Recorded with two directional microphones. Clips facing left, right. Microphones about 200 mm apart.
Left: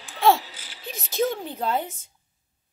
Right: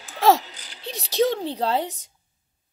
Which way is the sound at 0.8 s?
35° right (ahead or behind).